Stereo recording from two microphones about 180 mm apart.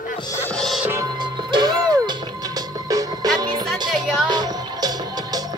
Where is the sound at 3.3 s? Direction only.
25° right (ahead or behind).